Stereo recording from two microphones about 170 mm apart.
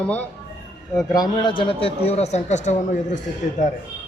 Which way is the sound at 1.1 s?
25° left (ahead or behind).